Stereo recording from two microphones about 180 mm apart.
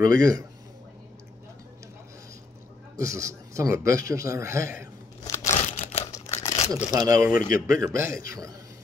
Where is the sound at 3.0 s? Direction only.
15° right (ahead or behind).